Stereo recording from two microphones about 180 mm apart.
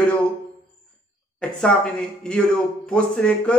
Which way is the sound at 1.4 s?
5° left (ahead or behind).